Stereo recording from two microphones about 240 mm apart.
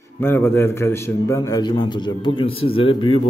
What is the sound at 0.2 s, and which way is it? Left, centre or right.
A man's voice, centre.